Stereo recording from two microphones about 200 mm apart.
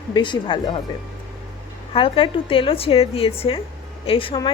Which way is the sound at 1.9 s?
25° left (ahead or behind).